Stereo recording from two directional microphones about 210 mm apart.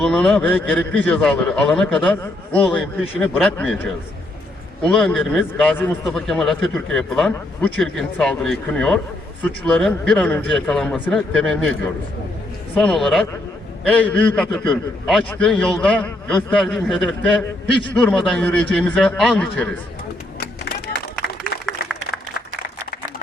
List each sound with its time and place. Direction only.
0.0 s a man's voice: 5° left (ahead or behind)
4.9 s a man's voice: centre (ahead or behind)
12.7 s a man's voice: 5° left (ahead or behind)
21.2 s applause: 50° left (ahead or behind)
21.7 s applause: centre (ahead or behind)